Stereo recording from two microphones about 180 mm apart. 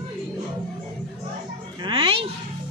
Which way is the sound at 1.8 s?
30° right (ahead or behind).